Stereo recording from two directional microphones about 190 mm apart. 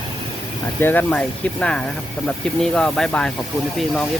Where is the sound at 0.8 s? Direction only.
10° left (ahead or behind).